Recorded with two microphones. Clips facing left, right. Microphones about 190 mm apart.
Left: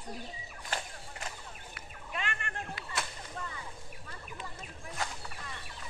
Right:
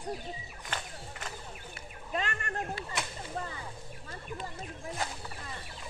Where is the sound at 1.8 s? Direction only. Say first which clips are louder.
Right 5 dB; 40° right (ahead or behind).